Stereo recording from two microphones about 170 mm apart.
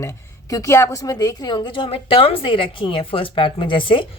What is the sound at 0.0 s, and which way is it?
A woman's voice, 15° left (ahead or behind).